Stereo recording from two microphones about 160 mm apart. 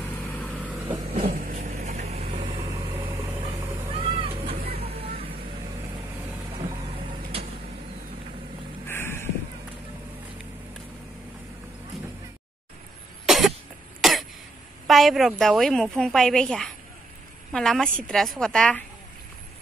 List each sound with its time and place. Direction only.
0.5 s vehicle: 10° right (ahead or behind)
1.2 s vehicle: 60° right (ahead or behind); by 2.5 s 35° right (ahead or behind)
3.9 s vehicle: 35° right (ahead or behind)
8.8 s a sound: 15° left (ahead or behind)
13.2 s cough: centre (ahead or behind)
14.0 s throat clearing: centre (ahead or behind)
14.9 s a woman's voice: centre (ahead or behind)